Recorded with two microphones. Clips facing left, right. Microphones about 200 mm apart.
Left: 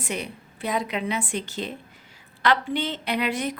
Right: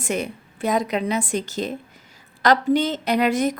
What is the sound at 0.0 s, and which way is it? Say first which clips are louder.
A woman's voice: right 6 dB; 45° right (ahead or behind).